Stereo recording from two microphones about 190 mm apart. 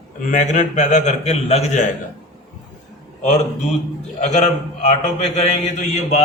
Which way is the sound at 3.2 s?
40° left (ahead or behind).